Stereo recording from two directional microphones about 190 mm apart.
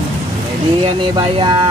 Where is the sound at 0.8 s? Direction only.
25° right (ahead or behind).